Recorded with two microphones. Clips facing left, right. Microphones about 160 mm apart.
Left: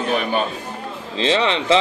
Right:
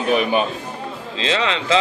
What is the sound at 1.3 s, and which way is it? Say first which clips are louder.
Speech: left 3 dB; 25° left (ahead or behind).